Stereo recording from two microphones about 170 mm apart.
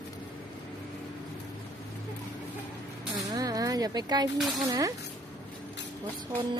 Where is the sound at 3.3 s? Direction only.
20° right (ahead or behind).